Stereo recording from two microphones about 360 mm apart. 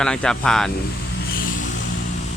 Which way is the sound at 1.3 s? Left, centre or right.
Left.